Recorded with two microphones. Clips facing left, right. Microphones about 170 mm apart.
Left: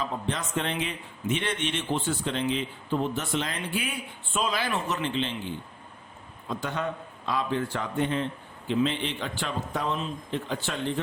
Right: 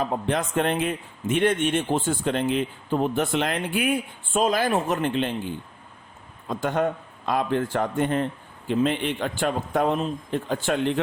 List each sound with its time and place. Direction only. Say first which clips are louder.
0.0 s a man's voice: right 6 dB; 55° right (ahead or behind)
4.4 s a man's voice: right 7 dB; 45° right (ahead or behind)
6.5 s a man's voice: right 7 dB; 50° right (ahead or behind)